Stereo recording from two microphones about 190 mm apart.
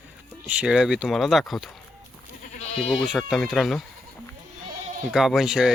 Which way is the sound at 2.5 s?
30° left (ahead or behind).